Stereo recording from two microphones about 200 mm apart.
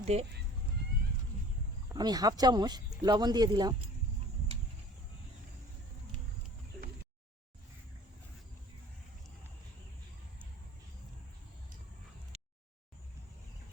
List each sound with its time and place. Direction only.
0.0 s speech: 30° right (ahead or behind)
1.9 s speech: 20° right (ahead or behind)
12.3 s a sound: 35° right (ahead or behind)